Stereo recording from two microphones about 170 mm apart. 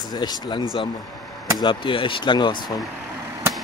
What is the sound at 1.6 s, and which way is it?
Speech, 30° left (ahead or behind).